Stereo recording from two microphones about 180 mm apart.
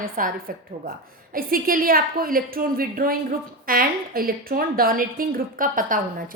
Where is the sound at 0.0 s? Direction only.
50° right (ahead or behind).